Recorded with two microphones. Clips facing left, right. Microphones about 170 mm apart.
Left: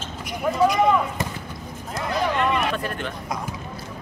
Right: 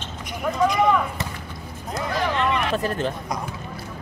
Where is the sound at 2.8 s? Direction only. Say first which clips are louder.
Right 4 dB; 35° right (ahead or behind).